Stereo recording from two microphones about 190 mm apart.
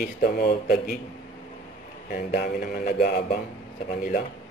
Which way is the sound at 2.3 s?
45° left (ahead or behind).